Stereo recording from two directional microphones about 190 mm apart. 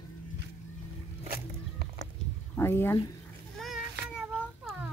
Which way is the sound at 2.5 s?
10° left (ahead or behind).